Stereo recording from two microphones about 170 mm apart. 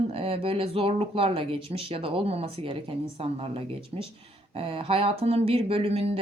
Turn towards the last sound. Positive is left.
turn(degrees=-35)  # may be behind; listen again after turning